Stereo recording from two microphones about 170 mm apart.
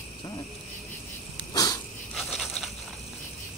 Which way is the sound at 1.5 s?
20° left (ahead or behind).